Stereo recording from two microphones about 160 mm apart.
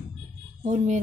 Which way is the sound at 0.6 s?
50° right (ahead or behind).